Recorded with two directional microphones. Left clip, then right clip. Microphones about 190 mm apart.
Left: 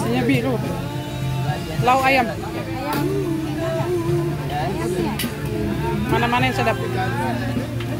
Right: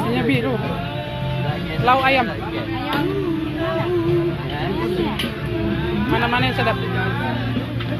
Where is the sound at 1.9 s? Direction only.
5° left (ahead or behind).